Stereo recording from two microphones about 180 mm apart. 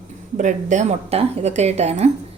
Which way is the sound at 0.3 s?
45° right (ahead or behind).